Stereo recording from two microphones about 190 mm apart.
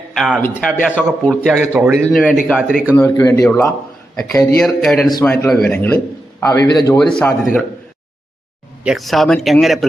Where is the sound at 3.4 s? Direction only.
5° left (ahead or behind).